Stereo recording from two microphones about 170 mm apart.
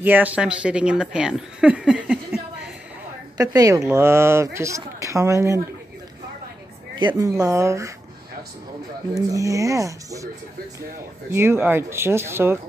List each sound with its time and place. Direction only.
0.0 s speech: 10° right (ahead or behind)
3.3 s speech: 20° right (ahead or behind)
7.0 s speech: 25° right (ahead or behind)
9.1 s speech: 20° right (ahead or behind)
11.3 s speech: 15° right (ahead or behind)